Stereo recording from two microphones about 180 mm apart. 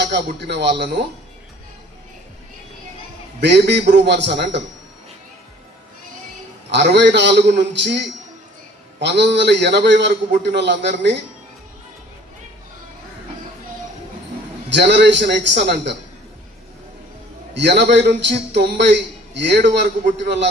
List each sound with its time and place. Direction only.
0.0 s a man's voice: 70° right (ahead or behind)
3.4 s a man's voice: 70° right (ahead or behind)
6.7 s a man's voice: 75° right (ahead or behind)
14.7 s a man's voice: 70° right (ahead or behind)
17.5 s a man's voice: 75° right (ahead or behind)